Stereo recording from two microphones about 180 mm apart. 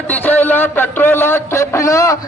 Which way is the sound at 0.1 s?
10° left (ahead or behind).